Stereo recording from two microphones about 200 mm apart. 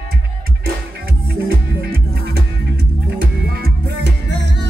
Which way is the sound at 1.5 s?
50° right (ahead or behind).